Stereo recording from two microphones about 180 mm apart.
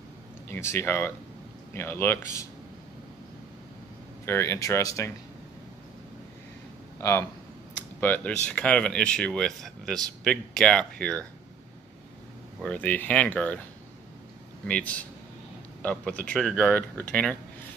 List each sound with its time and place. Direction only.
0.5 s speech: 15° left (ahead or behind)
4.3 s speech: 15° left (ahead or behind)
7.0 s speech: 15° left (ahead or behind)
12.6 s speech: 10° left (ahead or behind)
14.7 s speech: 10° left (ahead or behind)